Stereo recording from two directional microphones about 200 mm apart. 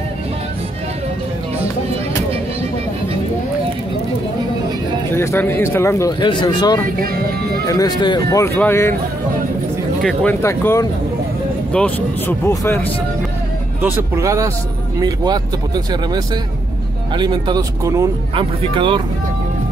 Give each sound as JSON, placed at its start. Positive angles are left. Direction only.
{"t": 5.1, "sound": "speech", "side_deg": 15}
{"t": 10.0, "sound": "speech", "side_deg": 10}
{"t": 13.7, "sound": "speech", "side_deg": -10}